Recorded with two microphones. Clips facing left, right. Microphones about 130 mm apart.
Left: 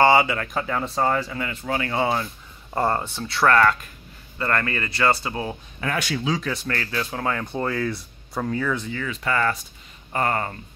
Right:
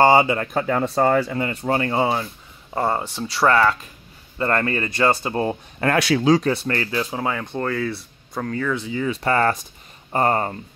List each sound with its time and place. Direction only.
0.2 s speech: 25° right (ahead or behind)
0.7 s speech: 50° right (ahead or behind)
1.3 s speech: 40° right (ahead or behind)
2.7 s speech: centre (ahead or behind)
4.4 s speech: 25° right (ahead or behind)
5.2 s speech: 40° right (ahead or behind)
5.8 s speech: 70° right (ahead or behind)
6.4 s speech: 30° right (ahead or behind); by 7.4 s 10° right (ahead or behind)
7.5 s speech: 5° left (ahead or behind)
9.1 s speech: 35° right (ahead or behind)